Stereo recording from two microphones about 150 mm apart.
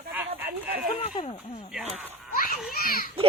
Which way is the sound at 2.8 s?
75° left (ahead or behind).